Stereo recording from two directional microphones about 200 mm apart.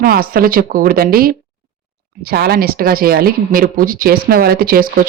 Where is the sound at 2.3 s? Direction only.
50° right (ahead or behind).